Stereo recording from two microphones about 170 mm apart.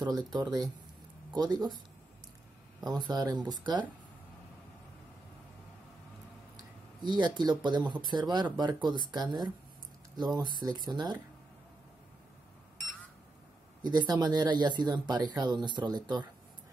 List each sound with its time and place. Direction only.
0.0 s speech: 25° right (ahead or behind)
2.8 s speech: 25° right (ahead or behind)
7.0 s speech: 25° right (ahead or behind)
13.8 s speech: 25° right (ahead or behind)